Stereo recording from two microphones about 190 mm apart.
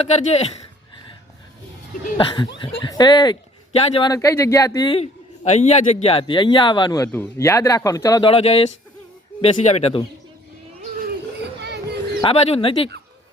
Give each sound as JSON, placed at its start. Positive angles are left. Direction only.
{"t": 0.1, "sound": "speech", "side_deg": 35}
{"t": 2.1, "sound": "speech", "side_deg": 25}
{"t": 4.1, "sound": "speech", "side_deg": 15}
{"t": 5.4, "sound": "speech", "side_deg": 35}
{"t": 8.3, "sound": "speech", "side_deg": 30}
{"t": 12.2, "sound": "speech", "side_deg": 30}